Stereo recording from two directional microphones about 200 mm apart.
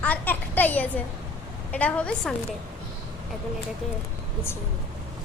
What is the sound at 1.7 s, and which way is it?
Speech, 5° left (ahead or behind).